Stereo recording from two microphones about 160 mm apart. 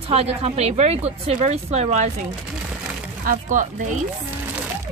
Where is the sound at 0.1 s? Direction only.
40° right (ahead or behind).